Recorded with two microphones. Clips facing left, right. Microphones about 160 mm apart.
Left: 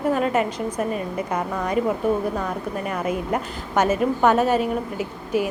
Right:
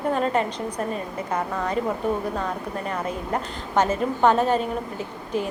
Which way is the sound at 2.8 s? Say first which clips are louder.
Left 4 dB; 10° left (ahead or behind).